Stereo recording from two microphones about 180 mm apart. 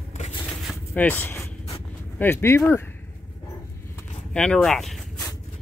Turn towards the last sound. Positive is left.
turn(degrees=5)  # may be behind; listen again after turning